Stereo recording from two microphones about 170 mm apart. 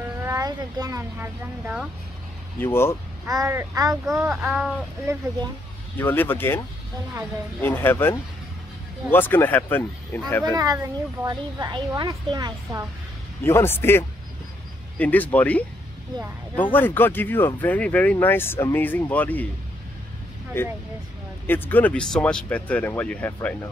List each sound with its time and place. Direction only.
0.2 s speech: 20° right (ahead or behind)
2.6 s speech: 15° left (ahead or behind)
3.3 s a woman's voice: 20° right (ahead or behind)
4.4 s speech: 5° right (ahead or behind)
5.9 s speech: 10° left (ahead or behind)
7.6 s speech: 10° left (ahead or behind)
10.5 s a woman's voice: 20° right (ahead or behind)
13.4 s speech: 15° left (ahead or behind)
16.7 s speech: 10° left (ahead or behind)
20.5 s speech: 15° left (ahead or behind)